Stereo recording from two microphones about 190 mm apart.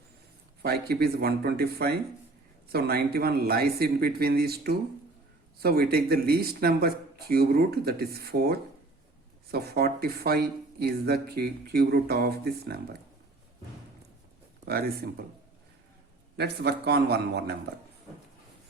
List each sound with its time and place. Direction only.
0.6 s speech: 55° right (ahead or behind)
14.6 s speech: 55° right (ahead or behind)
16.4 s speech: 60° right (ahead or behind)